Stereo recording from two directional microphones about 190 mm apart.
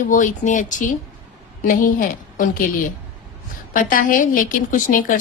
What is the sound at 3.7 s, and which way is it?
Speech, 45° left (ahead or behind).